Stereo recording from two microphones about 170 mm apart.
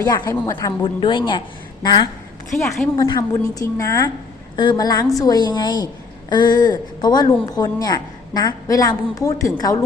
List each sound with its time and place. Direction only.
0.0 s a woman's voice: 25° left (ahead or behind)
2.5 s a woman's voice: centre (ahead or behind)
3.0 s a woman's voice: 20° left (ahead or behind)